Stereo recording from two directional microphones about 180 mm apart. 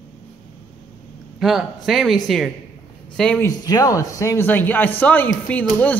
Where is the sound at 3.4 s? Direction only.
20° left (ahead or behind).